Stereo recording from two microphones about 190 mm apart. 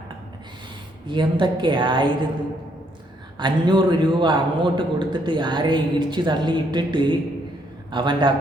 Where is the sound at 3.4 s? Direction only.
25° right (ahead or behind).